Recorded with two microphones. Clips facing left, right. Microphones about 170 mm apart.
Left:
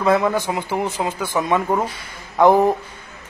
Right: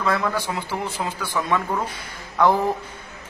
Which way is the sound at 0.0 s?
20° left (ahead or behind).